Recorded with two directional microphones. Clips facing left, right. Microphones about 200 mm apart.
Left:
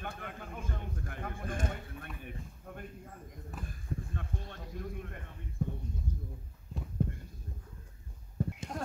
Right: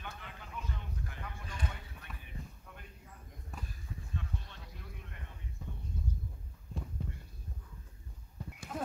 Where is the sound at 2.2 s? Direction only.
50° left (ahead or behind).